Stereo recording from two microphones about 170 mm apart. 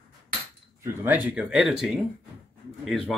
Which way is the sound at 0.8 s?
10° right (ahead or behind).